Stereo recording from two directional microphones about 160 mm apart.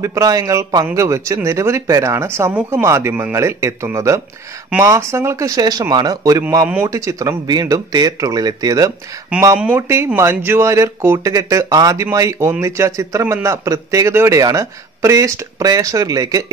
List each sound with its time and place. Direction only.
0.0 s speech: 20° right (ahead or behind)